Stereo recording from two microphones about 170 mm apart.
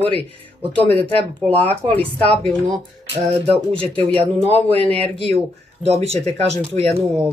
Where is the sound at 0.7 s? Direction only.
10° left (ahead or behind).